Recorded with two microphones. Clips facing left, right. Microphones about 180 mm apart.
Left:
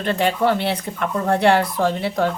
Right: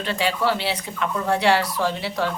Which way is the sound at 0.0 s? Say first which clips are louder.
Left 4 dB; 50° left (ahead or behind).